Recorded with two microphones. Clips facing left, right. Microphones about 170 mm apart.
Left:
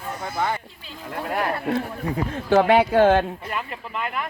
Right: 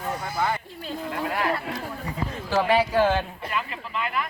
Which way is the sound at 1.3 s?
45° left (ahead or behind).